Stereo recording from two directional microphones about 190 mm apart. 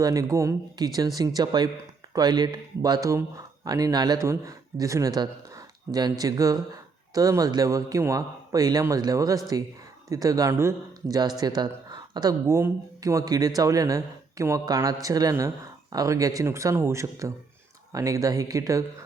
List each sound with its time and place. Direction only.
0.0 s speech: 15° right (ahead or behind)